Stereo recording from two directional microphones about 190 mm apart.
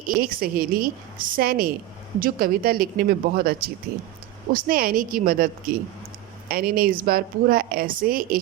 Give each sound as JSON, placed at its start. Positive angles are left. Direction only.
{"t": 0.1, "sound": "a woman's voice", "side_deg": -50}